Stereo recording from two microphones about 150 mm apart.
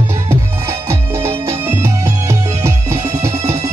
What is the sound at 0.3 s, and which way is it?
Music, 20° right (ahead or behind).